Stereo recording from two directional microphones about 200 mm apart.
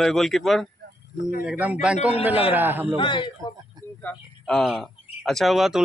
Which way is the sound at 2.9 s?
25° left (ahead or behind).